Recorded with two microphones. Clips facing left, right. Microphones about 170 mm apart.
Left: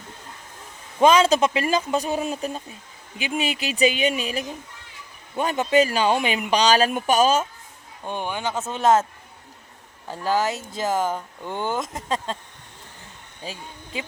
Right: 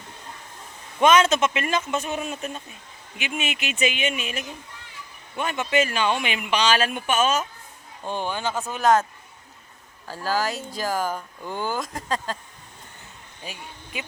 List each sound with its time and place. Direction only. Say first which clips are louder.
0.9 s speech: left 2 dB; 30° left (ahead or behind)
8.0 s speech: even; 15° left (ahead or behind)
10.1 s speech: left 3 dB; 20° left (ahead or behind)
13.4 s speech: left 3 dB; 30° left (ahead or behind)